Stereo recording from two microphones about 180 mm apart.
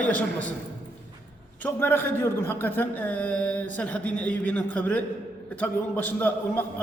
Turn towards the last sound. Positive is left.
turn(degrees=10)  # may be behind; listen again after turning